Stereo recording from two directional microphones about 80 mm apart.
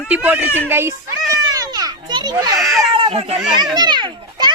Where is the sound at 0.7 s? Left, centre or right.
Right.